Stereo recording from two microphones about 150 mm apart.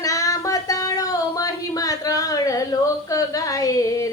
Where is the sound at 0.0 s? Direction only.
20° left (ahead or behind).